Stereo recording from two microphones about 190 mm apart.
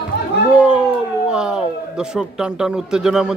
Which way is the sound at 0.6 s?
5° right (ahead or behind).